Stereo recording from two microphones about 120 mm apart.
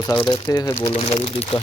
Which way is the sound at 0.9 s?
55° left (ahead or behind).